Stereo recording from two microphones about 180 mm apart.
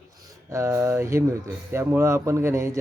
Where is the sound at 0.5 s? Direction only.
15° right (ahead or behind).